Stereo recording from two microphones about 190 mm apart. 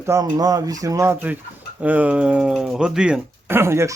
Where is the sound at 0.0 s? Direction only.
15° right (ahead or behind).